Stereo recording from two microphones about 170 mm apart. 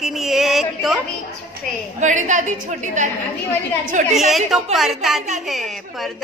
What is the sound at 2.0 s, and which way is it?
A woman's voice, 45° right (ahead or behind).